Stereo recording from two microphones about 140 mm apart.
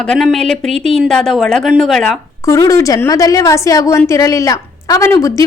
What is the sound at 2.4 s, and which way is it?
A woman's voice, 25° left (ahead or behind).